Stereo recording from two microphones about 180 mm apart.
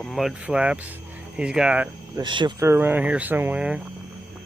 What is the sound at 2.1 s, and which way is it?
Speech, 25° right (ahead or behind).